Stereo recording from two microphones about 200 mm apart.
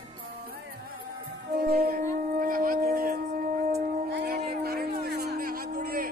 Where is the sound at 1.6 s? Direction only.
50° right (ahead or behind).